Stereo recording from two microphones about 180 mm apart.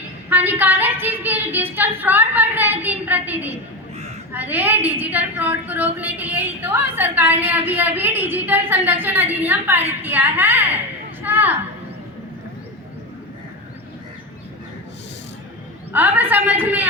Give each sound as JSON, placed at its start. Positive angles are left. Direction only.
{"t": 0.3, "sound": "a woman's voice", "side_deg": -10}
{"t": 3.5, "sound": "a sound", "side_deg": -35}
{"t": 4.3, "sound": "a woman's voice", "side_deg": -10}
{"t": 15.9, "sound": "a woman's voice", "side_deg": -10}